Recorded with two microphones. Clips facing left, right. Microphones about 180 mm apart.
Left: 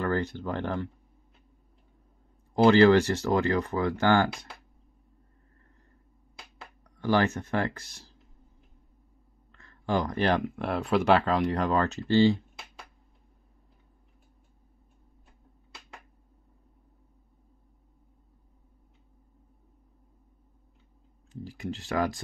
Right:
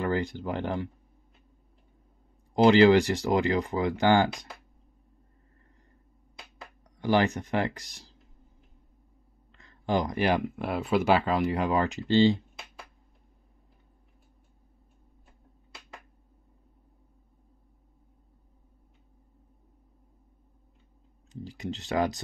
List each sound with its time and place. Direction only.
0.0 s speech: 10° right (ahead or behind)
2.5 s speech: 15° right (ahead or behind)
7.0 s speech: 15° right (ahead or behind)
9.5 s speech: 15° right (ahead or behind)
21.3 s speech: 20° right (ahead or behind)